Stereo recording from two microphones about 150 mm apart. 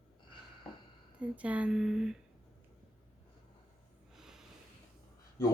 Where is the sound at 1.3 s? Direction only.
10° right (ahead or behind).